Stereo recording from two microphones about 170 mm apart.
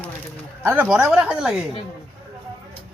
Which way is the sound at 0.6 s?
5° right (ahead or behind).